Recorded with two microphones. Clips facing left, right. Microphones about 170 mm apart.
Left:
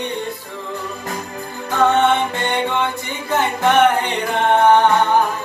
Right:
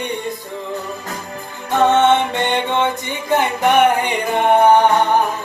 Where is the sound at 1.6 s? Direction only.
20° right (ahead or behind).